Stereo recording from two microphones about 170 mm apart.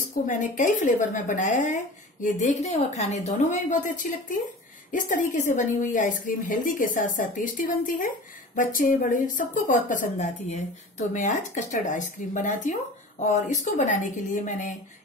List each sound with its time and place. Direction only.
0.3 s a woman's voice: 50° left (ahead or behind)